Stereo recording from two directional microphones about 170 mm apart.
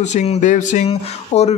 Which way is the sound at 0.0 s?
40° left (ahead or behind).